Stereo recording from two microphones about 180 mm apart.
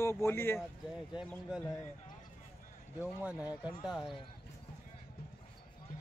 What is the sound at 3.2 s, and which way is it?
A man's voice, 10° right (ahead or behind).